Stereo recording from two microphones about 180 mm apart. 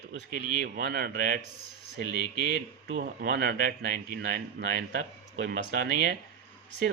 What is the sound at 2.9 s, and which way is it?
Speech, 55° right (ahead or behind).